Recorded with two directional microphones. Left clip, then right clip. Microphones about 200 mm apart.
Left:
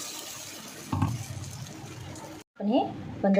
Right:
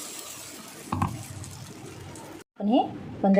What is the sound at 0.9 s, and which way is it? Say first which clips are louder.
Water: right 3 dB; 40° right (ahead or behind).